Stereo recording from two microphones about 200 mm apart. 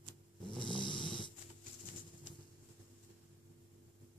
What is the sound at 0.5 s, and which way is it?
Snoring, 25° left (ahead or behind).